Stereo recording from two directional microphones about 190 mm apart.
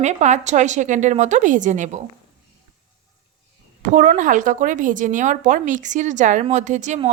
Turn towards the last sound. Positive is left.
turn(degrees=-40)  # may be behind; listen again after turning